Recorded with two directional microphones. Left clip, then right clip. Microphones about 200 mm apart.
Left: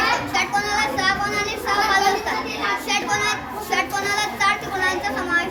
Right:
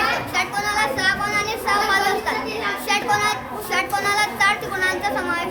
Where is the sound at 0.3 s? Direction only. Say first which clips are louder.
Even; 15° right (ahead or behind).